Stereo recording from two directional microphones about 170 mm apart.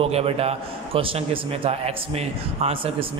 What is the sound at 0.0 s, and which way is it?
A man's voice, 35° right (ahead or behind).